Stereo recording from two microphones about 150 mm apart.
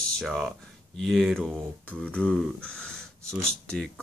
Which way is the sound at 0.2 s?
Centre (ahead or behind).